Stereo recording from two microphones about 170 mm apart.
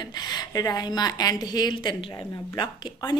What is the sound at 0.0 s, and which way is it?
Speech, 25° left (ahead or behind).